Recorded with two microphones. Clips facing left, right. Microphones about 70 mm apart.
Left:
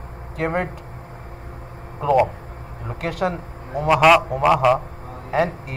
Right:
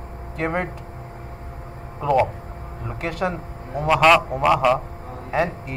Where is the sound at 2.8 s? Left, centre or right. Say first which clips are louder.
Left 2 dB; left.